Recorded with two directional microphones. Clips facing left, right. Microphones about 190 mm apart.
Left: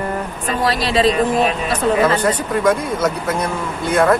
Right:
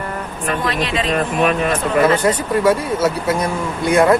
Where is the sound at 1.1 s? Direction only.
55° right (ahead or behind).